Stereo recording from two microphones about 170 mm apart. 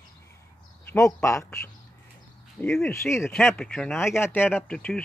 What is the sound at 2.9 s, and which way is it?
Speech, 15° left (ahead or behind).